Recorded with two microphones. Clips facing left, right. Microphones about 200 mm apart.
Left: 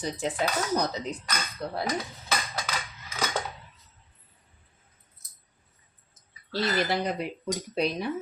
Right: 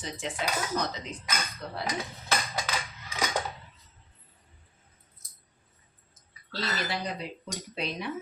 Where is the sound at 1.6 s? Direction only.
35° left (ahead or behind).